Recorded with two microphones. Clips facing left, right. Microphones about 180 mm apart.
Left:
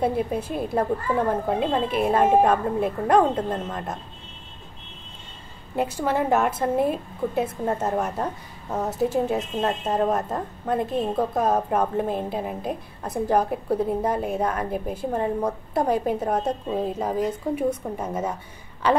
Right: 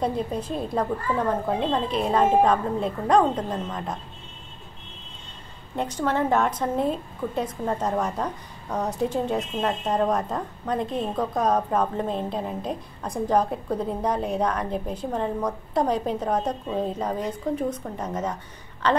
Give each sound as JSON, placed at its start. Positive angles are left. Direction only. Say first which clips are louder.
{"t": 0.0, "sound": "a woman's voice", "louder": "left 2 dB", "side_deg": 10}
{"t": 5.8, "sound": "a woman's voice", "louder": "left 1 dB", "side_deg": 10}